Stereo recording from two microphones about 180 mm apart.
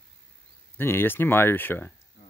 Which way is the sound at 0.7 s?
10° left (ahead or behind).